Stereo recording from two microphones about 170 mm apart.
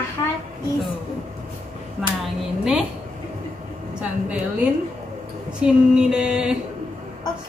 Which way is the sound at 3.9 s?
10° right (ahead or behind).